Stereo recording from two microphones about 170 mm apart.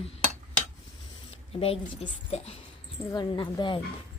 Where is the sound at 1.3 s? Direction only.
35° left (ahead or behind).